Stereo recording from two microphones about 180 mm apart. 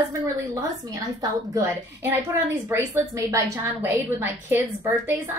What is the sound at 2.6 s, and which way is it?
A woman's voice, 15° right (ahead or behind).